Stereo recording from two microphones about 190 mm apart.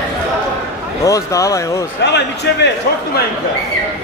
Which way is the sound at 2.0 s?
65° left (ahead or behind).